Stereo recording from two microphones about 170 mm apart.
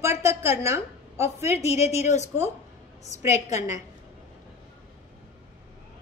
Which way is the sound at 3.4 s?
20° right (ahead or behind).